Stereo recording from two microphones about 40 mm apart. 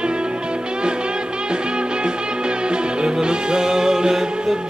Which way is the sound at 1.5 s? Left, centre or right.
Right.